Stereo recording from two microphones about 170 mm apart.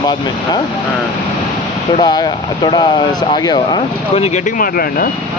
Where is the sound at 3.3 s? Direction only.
25° left (ahead or behind).